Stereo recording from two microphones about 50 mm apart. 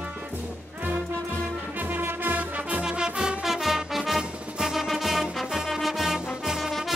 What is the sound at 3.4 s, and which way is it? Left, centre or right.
Music, centre.